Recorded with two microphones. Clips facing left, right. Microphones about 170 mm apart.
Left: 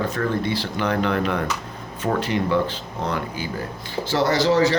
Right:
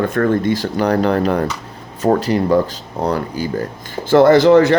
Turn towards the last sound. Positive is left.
turn(degrees=-55)  # may be behind; listen again after turning